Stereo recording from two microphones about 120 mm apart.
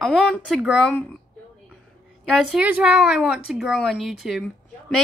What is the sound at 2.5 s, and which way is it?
A woman's voice, 10° right (ahead or behind).